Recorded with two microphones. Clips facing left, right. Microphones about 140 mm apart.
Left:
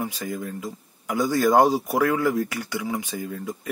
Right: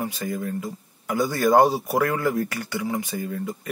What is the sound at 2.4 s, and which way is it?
Speech, 15° left (ahead or behind).